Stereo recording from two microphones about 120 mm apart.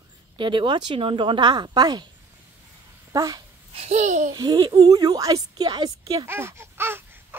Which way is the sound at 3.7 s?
65° right (ahead or behind).